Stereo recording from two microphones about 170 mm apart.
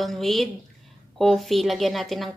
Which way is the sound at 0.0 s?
Centre (ahead or behind).